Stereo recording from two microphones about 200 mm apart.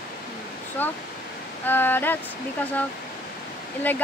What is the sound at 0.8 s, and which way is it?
Speech, 10° left (ahead or behind).